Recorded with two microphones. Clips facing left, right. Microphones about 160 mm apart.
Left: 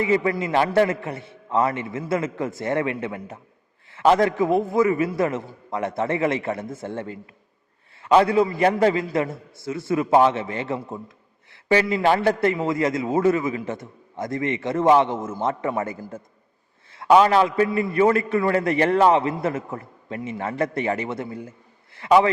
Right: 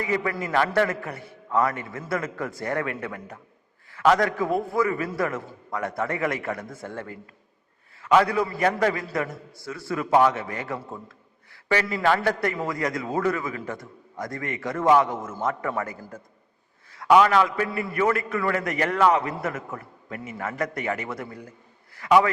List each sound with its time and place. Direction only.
0.0 s a man's voice: 25° left (ahead or behind)
11.5 s a sound: 25° left (ahead or behind)
12.0 s a man's voice: 25° left (ahead or behind)